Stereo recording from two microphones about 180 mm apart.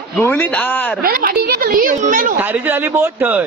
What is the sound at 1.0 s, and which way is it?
A woman's voice, 55° right (ahead or behind).